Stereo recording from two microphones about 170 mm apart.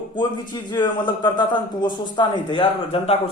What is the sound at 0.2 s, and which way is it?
A man's voice, 25° left (ahead or behind).